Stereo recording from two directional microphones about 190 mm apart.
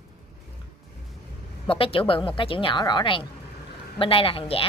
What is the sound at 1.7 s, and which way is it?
A woman's voice, 30° left (ahead or behind).